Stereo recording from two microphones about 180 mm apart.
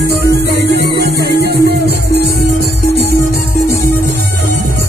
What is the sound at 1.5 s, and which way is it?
Music, 65° right (ahead or behind).